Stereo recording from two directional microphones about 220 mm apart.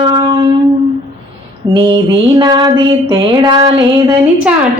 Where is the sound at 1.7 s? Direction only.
20° right (ahead or behind).